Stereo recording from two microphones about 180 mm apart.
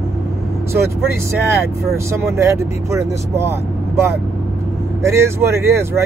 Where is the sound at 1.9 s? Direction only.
15° right (ahead or behind).